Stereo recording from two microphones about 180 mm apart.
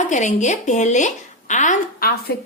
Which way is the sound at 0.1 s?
40° left (ahead or behind).